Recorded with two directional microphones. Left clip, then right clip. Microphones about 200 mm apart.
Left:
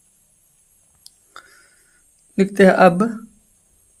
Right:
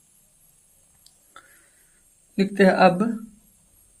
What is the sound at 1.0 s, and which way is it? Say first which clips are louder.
Whispering: left 7 dB; 40° left (ahead or behind).